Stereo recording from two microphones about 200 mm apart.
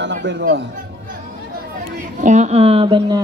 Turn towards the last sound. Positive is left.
turn(degrees=-25)  # may be behind; listen again after turning